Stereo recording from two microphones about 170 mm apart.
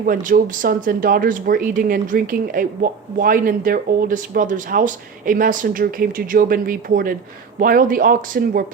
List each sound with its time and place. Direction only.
0.0 s speech: 55° right (ahead or behind)